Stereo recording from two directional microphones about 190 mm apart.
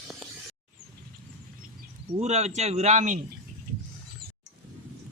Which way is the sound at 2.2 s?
35° right (ahead or behind).